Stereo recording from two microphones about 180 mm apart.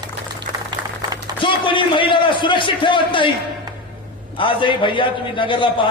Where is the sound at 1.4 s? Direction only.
30° left (ahead or behind).